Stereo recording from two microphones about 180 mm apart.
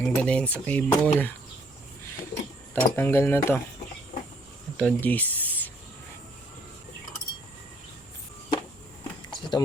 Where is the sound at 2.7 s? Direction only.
10° left (ahead or behind).